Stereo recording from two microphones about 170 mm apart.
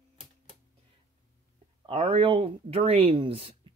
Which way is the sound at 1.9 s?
35° right (ahead or behind).